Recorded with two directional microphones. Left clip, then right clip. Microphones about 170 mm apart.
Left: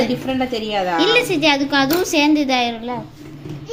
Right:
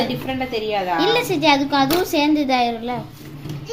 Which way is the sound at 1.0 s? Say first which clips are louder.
Left 4 dB; 10° right (ahead or behind).